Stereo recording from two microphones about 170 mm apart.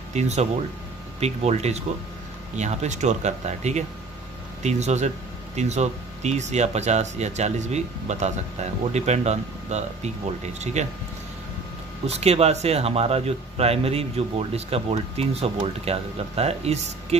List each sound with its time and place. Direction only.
0.1 s speech: 40° right (ahead or behind)
12.1 s speech: 40° right (ahead or behind)